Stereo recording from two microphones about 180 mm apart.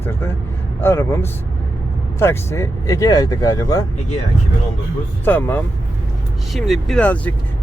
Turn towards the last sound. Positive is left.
turn(degrees=10)  # may be behind; listen again after turning